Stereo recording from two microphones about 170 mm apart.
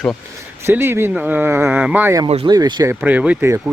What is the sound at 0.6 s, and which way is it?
Speech, 15° right (ahead or behind).